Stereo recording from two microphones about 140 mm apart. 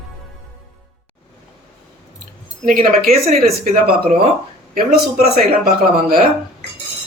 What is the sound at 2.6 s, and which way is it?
Speech, 90° right.